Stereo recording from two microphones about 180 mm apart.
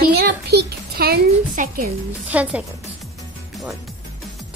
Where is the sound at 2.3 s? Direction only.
10° right (ahead or behind).